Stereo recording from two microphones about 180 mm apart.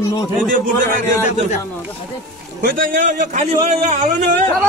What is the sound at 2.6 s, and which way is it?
A man's voice, 50° right (ahead or behind).